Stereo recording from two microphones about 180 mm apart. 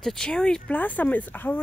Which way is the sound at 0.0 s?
5° left (ahead or behind).